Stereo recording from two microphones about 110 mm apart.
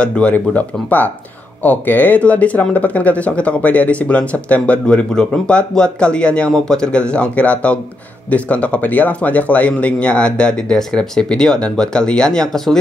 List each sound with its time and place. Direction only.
0.0 s speech: 10° left (ahead or behind)